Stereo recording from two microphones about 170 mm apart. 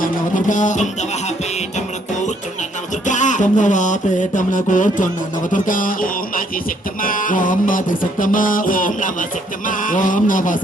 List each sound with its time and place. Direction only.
0.0 s music: 50° left (ahead or behind)
3.1 s music: 45° left (ahead or behind)